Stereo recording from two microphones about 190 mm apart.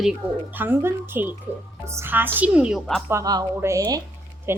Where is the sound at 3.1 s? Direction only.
15° right (ahead or behind).